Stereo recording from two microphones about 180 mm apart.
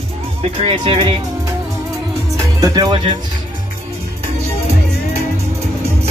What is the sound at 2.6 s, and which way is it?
Speech, 25° right (ahead or behind).